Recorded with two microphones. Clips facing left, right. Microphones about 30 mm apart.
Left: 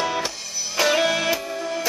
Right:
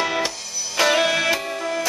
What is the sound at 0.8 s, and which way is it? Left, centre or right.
Music, centre.